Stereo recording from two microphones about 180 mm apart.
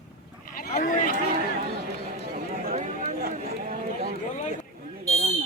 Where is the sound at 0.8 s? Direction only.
50° left (ahead or behind).